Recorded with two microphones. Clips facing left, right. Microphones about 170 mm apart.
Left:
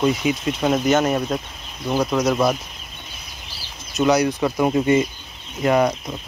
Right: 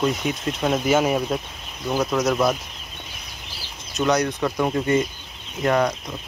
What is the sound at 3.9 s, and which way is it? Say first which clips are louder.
Speech: left 3 dB; 5° left (ahead or behind).